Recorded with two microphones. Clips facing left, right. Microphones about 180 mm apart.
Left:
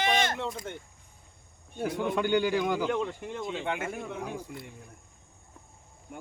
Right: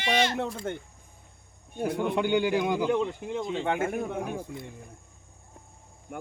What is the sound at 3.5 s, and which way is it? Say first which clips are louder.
Speech: right 5 dB; 40° right (ahead or behind).